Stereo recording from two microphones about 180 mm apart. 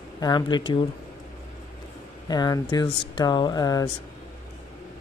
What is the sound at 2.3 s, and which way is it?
Speech, 20° left (ahead or behind).